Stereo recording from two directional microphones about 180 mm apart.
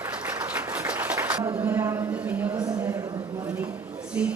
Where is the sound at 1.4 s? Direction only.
15° right (ahead or behind).